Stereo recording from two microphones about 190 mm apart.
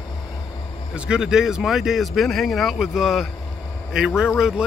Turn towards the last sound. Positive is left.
turn(degrees=-5)  # may be behind; listen again after turning